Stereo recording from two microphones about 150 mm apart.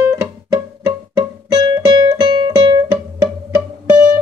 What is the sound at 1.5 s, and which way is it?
Music, 30° right (ahead or behind).